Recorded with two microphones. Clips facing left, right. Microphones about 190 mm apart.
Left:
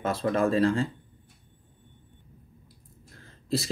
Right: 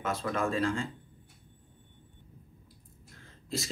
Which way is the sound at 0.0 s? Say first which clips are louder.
Left 6 dB; 35° left (ahead or behind).